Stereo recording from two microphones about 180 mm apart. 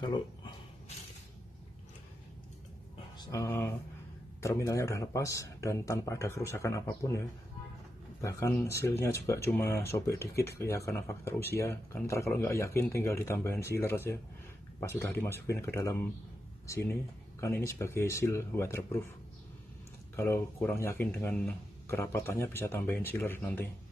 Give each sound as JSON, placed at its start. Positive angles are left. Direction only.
{"t": 3.2, "sound": "speech", "side_deg": 20}
{"t": 8.2, "sound": "speech", "side_deg": 15}
{"t": 20.2, "sound": "speech", "side_deg": 10}